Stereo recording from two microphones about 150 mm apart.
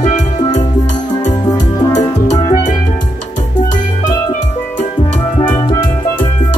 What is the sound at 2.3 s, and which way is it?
Music, 55° left (ahead or behind).